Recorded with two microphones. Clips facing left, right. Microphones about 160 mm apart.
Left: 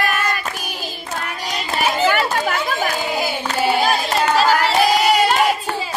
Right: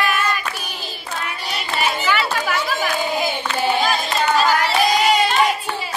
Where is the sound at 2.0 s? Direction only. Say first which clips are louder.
Left 3 dB; 45° left (ahead or behind).